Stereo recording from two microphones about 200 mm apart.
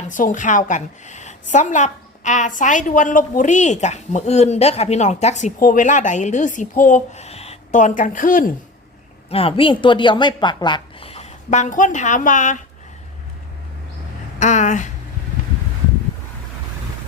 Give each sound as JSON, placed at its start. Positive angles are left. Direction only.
{"t": 0.1, "sound": "a woman's voice", "side_deg": 40}
{"t": 9.3, "sound": "a woman's voice", "side_deg": 30}
{"t": 14.3, "sound": "speech", "side_deg": 35}